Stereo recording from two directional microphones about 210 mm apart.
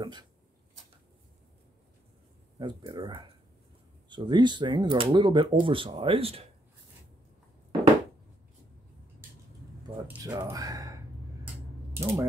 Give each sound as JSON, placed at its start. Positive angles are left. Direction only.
{"t": 0.0, "sound": "speech", "side_deg": -20}
{"t": 2.6, "sound": "speech", "side_deg": -20}
{"t": 10.0, "sound": "speech", "side_deg": -15}
{"t": 11.4, "sound": "mechanisms", "side_deg": -10}